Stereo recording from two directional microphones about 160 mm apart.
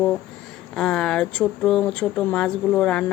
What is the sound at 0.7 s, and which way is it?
Speech, 5° left (ahead or behind).